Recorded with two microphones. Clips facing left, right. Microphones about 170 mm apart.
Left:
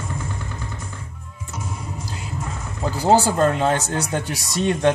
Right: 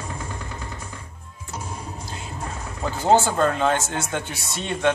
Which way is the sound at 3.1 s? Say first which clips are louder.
Left 2 dB; 35° left (ahead or behind).